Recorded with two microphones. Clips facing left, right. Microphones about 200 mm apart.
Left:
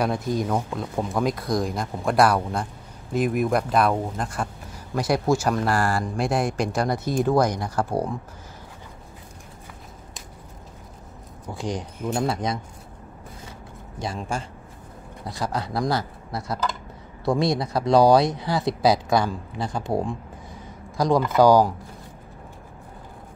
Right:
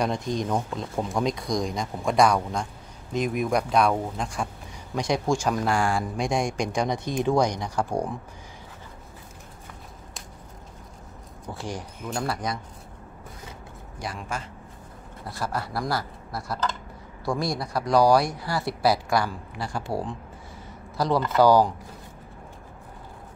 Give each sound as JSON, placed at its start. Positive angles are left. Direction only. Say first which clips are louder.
{"t": 0.0, "sound": "speech", "louder": "left 2 dB", "side_deg": 5}
{"t": 11.5, "sound": "speech", "louder": "left 5 dB", "side_deg": 20}
{"t": 13.9, "sound": "speech", "louder": "left 4 dB", "side_deg": 25}
{"t": 17.2, "sound": "speech", "louder": "left 5 dB", "side_deg": 20}